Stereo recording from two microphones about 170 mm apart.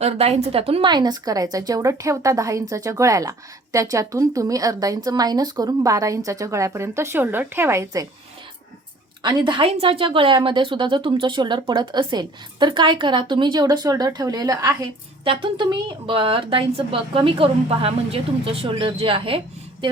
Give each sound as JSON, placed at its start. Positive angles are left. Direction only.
{"t": 0.0, "sound": "a woman's voice", "side_deg": -40}
{"t": 9.2, "sound": "speech", "side_deg": -25}